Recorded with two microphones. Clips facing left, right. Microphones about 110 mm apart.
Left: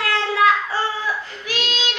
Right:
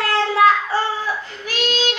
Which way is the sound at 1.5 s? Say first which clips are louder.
Right 4 dB; 40° right (ahead or behind).